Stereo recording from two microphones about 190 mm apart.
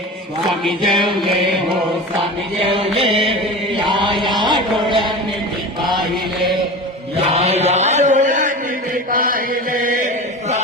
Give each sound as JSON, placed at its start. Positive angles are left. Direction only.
{"t": 0.6, "sound": "music", "side_deg": 0}
{"t": 2.6, "sound": "music", "side_deg": -30}
{"t": 3.8, "sound": "chant", "side_deg": -25}
{"t": 4.3, "sound": "music", "side_deg": -25}
{"t": 7.2, "sound": "chant", "side_deg": -35}